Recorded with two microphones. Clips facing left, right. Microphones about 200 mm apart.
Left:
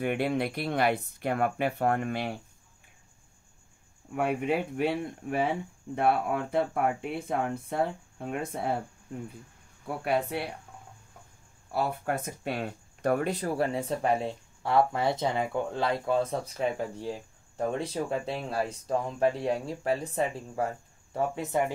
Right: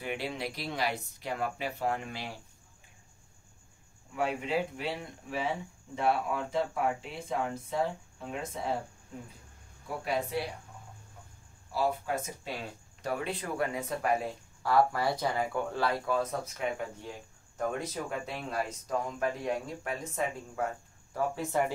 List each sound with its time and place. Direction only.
0.0 s speech: 55° left (ahead or behind)
4.1 s speech: 55° left (ahead or behind)
10.0 s speech: 60° left (ahead or behind)
11.7 s speech: 60° left (ahead or behind); by 20.6 s 30° left (ahead or behind)
21.1 s speech: 20° left (ahead or behind)